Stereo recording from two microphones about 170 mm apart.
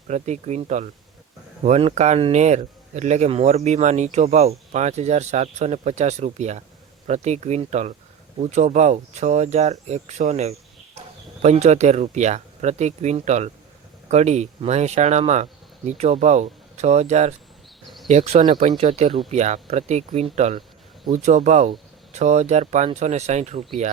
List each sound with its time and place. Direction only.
0.1 s speech: 40° right (ahead or behind)